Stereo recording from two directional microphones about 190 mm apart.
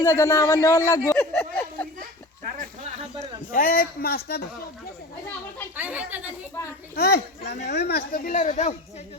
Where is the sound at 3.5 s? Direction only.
50° left (ahead or behind).